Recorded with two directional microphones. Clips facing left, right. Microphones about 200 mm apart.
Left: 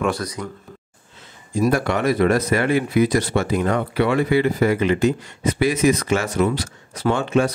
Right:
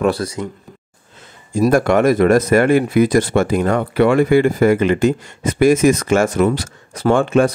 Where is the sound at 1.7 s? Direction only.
50° right (ahead or behind).